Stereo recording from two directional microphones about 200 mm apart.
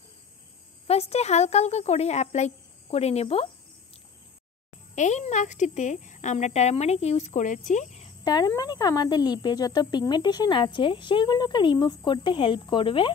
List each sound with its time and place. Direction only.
0.8 s a woman's voice: 30° left (ahead or behind)
4.9 s a woman's voice: 35° left (ahead or behind)
8.2 s speech: 20° left (ahead or behind)